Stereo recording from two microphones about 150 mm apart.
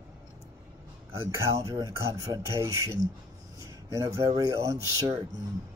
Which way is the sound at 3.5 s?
20° right (ahead or behind).